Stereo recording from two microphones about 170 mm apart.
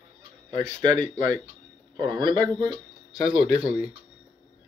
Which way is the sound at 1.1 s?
20° right (ahead or behind).